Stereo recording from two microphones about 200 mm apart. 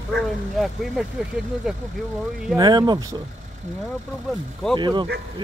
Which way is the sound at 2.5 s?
20° right (ahead or behind).